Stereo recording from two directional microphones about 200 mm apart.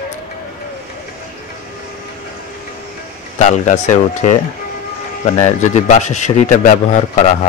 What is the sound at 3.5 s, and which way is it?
Speech, 35° left (ahead or behind).